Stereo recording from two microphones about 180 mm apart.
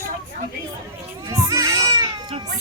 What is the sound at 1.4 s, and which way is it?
Baby cry, 20° right (ahead or behind).